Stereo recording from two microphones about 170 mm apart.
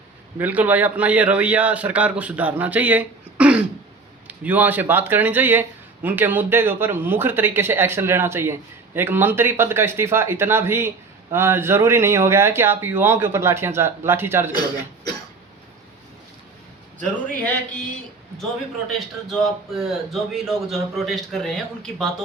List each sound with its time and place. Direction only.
0.3 s speech: 10° right (ahead or behind)
18.9 s a man's voice: centre (ahead or behind)